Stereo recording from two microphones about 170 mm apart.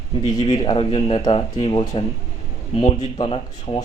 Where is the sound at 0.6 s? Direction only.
30° left (ahead or behind).